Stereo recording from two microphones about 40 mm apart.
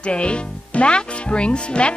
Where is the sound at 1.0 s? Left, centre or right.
Left.